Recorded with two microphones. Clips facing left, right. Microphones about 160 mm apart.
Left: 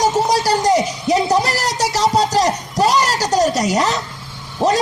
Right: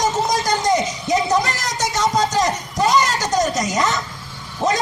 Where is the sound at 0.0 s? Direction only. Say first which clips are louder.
Left 4 dB; 35° left (ahead or behind).